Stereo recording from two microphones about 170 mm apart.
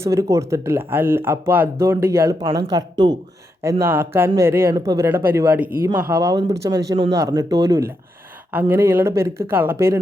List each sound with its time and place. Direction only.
0.0 s speech: 15° right (ahead or behind)